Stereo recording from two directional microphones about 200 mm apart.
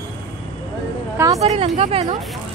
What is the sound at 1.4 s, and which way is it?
Speech, 30° right (ahead or behind).